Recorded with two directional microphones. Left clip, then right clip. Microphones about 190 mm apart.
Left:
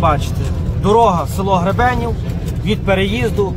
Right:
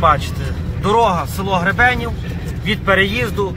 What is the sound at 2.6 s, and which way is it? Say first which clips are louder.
Speech: right 2 dB; 55° right (ahead or behind).